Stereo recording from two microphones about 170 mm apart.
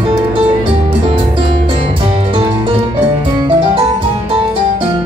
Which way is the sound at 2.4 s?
25° right (ahead or behind).